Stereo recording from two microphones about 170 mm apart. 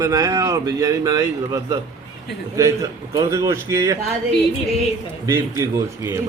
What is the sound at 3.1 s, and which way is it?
Speech, 20° right (ahead or behind).